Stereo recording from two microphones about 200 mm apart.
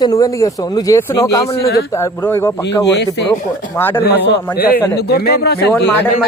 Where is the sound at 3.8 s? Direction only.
10° left (ahead or behind).